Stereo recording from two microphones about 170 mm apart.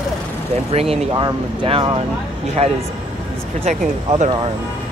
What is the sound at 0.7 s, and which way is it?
Speech, 35° right (ahead or behind).